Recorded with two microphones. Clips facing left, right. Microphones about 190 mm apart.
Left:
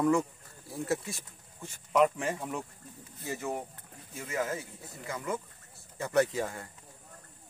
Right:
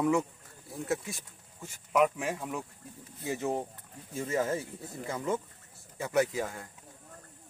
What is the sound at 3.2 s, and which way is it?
Speech, 20° right (ahead or behind).